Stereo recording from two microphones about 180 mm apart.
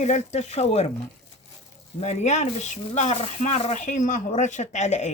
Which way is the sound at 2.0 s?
40° left (ahead or behind).